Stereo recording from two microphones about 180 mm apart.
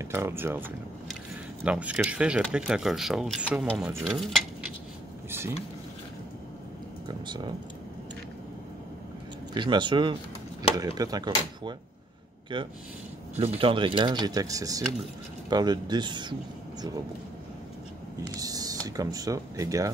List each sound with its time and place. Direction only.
0.0 s speech: 15° right (ahead or behind)
4.0 s dishes: centre (ahead or behind)
7.1 s speech: 25° right (ahead or behind)
9.5 s speech: 25° right (ahead or behind)
18.3 s speech: 20° right (ahead or behind)